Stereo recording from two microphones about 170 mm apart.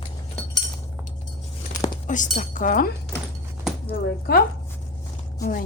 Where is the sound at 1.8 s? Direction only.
50° left (ahead or behind).